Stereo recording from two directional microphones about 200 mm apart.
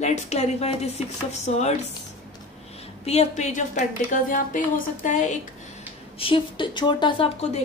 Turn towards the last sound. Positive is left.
turn(degrees=30)  # may be behind; listen again after turning